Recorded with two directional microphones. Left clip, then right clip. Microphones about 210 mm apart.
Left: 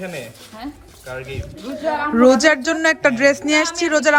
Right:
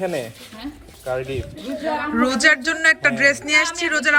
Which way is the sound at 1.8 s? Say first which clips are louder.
Left 6 dB; 20° left (ahead or behind).